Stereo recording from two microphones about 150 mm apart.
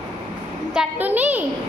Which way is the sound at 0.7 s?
10° right (ahead or behind).